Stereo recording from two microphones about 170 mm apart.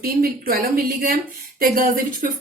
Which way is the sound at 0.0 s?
60° right (ahead or behind).